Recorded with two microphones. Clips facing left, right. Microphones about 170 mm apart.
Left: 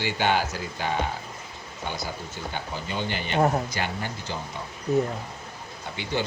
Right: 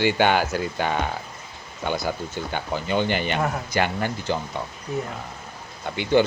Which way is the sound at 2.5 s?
65° right (ahead or behind).